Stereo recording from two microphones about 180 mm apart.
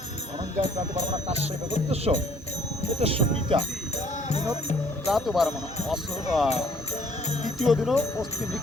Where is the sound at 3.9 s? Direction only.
35° left (ahead or behind).